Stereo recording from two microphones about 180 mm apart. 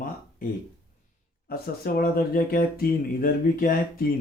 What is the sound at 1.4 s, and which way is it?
Speech, 55° left (ahead or behind).